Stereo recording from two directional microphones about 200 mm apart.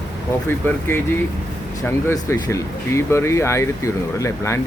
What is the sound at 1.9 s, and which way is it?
Speech, 10° left (ahead or behind).